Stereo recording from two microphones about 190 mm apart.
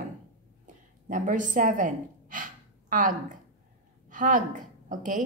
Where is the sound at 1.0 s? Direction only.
45° right (ahead or behind).